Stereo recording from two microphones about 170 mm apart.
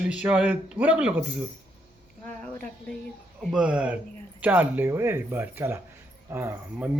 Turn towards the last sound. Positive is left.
turn(degrees=-15)  # may be behind; listen again after turning